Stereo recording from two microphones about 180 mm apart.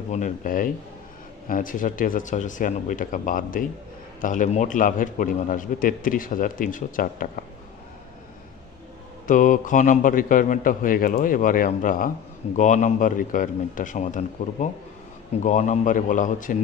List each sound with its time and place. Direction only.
0.1 s a man's voice: 45° left (ahead or behind)
9.3 s a man's voice: 45° left (ahead or behind)